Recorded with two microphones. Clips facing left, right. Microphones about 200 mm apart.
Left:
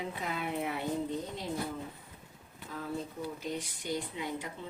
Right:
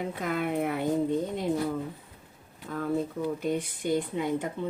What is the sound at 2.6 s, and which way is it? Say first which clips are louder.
Speech: right 9 dB; 55° right (ahead or behind).